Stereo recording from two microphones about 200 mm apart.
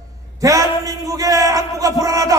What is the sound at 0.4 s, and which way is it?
A man's voice, 15° right (ahead or behind).